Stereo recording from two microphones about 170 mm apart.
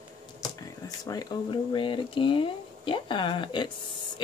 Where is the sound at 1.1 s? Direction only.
25° left (ahead or behind).